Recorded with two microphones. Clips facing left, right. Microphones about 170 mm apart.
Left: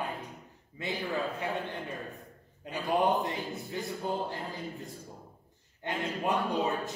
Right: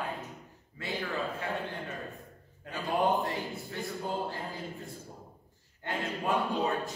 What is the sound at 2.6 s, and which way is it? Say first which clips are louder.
A man's voice: left 1 dB; 20° left (ahead or behind).